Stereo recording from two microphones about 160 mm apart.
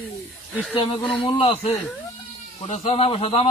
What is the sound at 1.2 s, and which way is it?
A man's voice, 35° left (ahead or behind).